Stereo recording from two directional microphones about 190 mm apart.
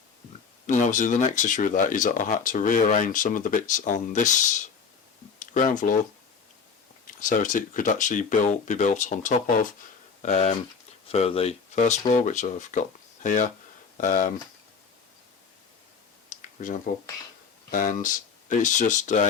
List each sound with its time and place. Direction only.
0.7 s speech: 40° left (ahead or behind)
7.2 s speech: 45° left (ahead or behind)
16.3 s a sound: 45° left (ahead or behind)
17.7 s speech: 45° left (ahead or behind)